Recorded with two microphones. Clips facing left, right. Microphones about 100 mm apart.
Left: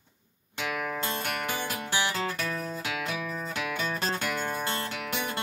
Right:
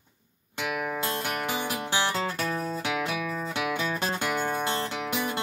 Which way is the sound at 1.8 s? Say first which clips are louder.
Right 1 dB; 20° right (ahead or behind).